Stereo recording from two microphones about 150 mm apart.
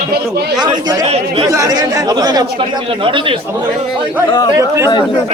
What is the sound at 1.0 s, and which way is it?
Speech, 45° right (ahead or behind).